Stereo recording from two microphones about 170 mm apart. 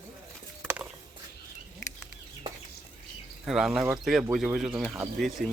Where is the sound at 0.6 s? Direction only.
10° right (ahead or behind).